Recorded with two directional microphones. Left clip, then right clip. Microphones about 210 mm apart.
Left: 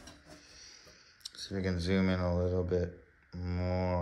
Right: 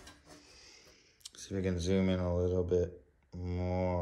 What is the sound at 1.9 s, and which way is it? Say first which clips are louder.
Speech: left 1 dB; 90° right.